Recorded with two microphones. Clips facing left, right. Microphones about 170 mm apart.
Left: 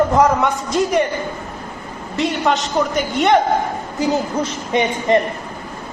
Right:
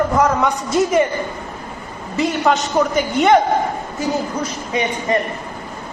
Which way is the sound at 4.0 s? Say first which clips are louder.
Left 3 dB; 25° left (ahead or behind).